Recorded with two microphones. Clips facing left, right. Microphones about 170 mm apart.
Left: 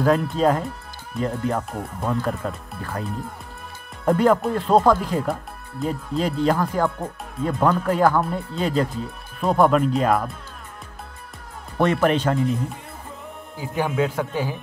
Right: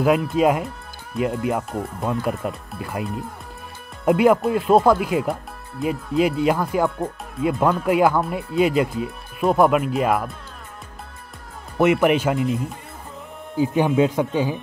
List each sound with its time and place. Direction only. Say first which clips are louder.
0.0 s speech: right 1 dB; 10° right (ahead or behind)
11.8 s speech: right 2 dB; 10° right (ahead or behind)
13.9 s speech: right 4 dB; 20° right (ahead or behind)